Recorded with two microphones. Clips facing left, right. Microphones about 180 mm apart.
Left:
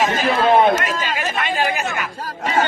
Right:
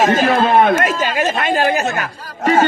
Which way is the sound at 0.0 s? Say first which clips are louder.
Right 4 dB; 50° right (ahead or behind).